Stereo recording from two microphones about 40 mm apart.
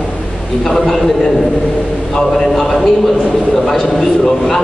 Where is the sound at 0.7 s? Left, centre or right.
Centre.